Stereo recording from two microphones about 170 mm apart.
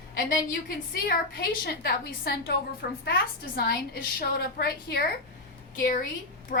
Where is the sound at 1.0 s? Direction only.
65° left (ahead or behind).